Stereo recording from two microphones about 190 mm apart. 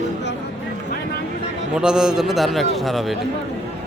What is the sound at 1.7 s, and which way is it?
A man's voice, 5° right (ahead or behind).